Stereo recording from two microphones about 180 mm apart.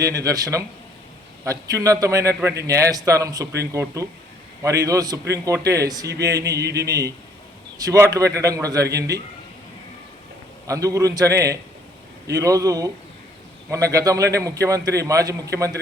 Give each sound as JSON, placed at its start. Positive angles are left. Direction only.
{"t": 0.0, "sound": "a man's voice", "side_deg": -20}
{"t": 6.6, "sound": "speech", "side_deg": -65}
{"t": 6.8, "sound": "a man's voice", "side_deg": -20}
{"t": 10.7, "sound": "a man's voice", "side_deg": -20}